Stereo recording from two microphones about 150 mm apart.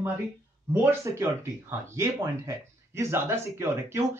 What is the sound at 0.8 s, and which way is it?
Speech, 20° right (ahead or behind).